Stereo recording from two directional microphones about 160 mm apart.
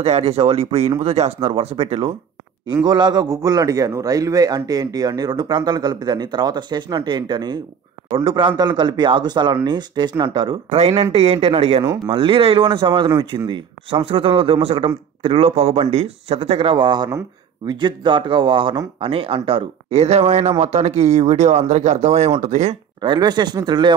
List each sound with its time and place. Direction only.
0.0 s a man's voice: 40° right (ahead or behind)
10.8 s speech: 40° right (ahead or behind)
22.9 s a man's voice: 25° right (ahead or behind)